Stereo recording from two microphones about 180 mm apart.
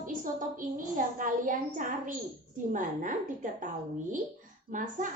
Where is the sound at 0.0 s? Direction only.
50° right (ahead or behind).